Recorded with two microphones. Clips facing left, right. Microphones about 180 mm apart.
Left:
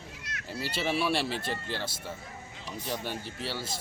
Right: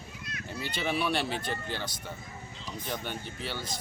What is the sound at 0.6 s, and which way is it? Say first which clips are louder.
A man's voice: left 1 dB; 5° left (ahead or behind).